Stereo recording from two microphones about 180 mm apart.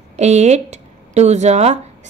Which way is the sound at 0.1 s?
40° right (ahead or behind).